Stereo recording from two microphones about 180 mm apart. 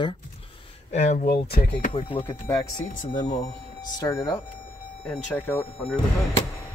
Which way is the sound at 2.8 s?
45° left (ahead or behind).